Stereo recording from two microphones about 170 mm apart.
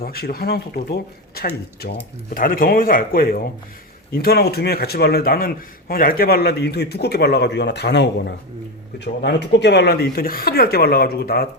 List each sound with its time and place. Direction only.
0.0 s a man's voice: 65° left (ahead or behind)
2.3 s a man's voice: 55° left (ahead or behind)